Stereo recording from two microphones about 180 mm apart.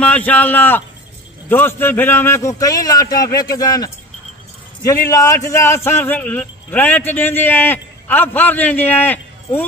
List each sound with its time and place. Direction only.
0.0 s a man's voice: 5° left (ahead or behind)